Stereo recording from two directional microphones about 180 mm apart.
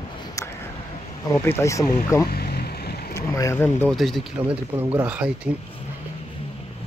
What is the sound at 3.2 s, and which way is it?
Speech, 15° left (ahead or behind).